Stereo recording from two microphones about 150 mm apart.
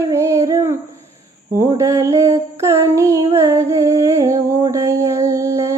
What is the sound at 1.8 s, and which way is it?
Mantra, 20° right (ahead or behind).